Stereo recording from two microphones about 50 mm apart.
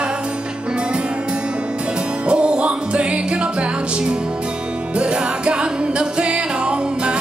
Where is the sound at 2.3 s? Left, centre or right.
Right.